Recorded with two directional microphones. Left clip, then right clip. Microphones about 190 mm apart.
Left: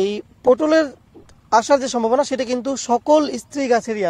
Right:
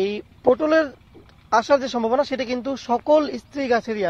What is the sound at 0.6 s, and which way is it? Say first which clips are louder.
Speech: left 2 dB; 40° left (ahead or behind).